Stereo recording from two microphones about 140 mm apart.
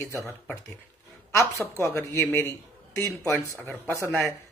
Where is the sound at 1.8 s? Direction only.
20° left (ahead or behind).